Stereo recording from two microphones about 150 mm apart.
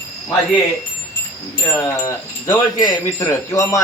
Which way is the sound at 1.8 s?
20° left (ahead or behind).